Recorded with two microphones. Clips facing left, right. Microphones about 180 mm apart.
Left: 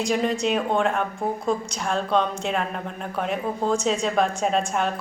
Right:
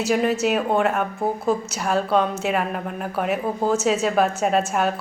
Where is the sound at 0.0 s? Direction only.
5° right (ahead or behind).